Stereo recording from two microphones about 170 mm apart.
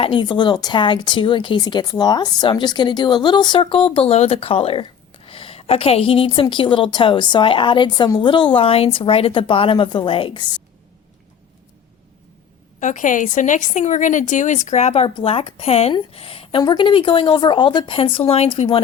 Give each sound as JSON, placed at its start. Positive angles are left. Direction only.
{"t": 0.0, "sound": "speech", "side_deg": 30}
{"t": 12.8, "sound": "a woman's voice", "side_deg": 45}